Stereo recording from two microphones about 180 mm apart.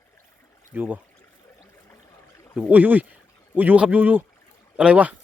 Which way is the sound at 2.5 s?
10° right (ahead or behind).